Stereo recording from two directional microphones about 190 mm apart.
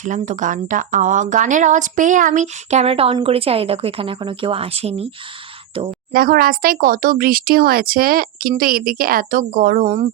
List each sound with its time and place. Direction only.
0.0 s speech: 40° right (ahead or behind)
6.1 s speech: 50° right (ahead or behind)